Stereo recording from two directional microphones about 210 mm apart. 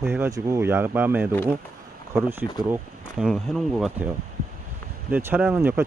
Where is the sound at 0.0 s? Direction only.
10° right (ahead or behind).